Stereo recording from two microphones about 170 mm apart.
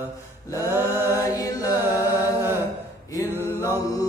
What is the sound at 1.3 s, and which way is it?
A capella, 20° left (ahead or behind).